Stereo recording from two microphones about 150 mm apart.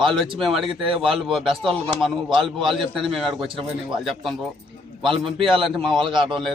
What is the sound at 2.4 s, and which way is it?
Speech, 35° right (ahead or behind).